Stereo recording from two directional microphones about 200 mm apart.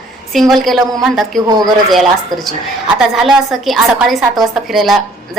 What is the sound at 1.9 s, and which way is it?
A woman's voice, centre (ahead or behind).